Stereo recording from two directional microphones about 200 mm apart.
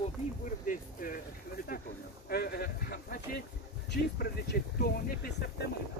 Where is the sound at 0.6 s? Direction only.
45° left (ahead or behind).